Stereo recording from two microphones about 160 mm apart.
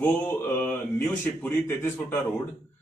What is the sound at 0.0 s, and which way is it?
Speech, 15° left (ahead or behind).